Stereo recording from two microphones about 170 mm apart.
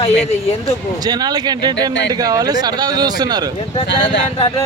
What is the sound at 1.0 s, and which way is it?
Speech, 25° right (ahead or behind).